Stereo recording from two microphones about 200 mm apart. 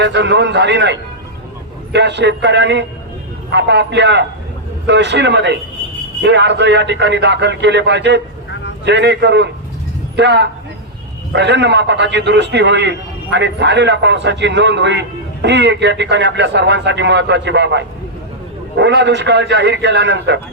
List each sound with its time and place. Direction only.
0.0 s a man's voice: 60° right (ahead or behind)